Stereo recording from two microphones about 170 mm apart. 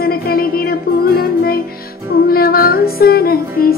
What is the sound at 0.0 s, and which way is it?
Music, 60° left (ahead or behind).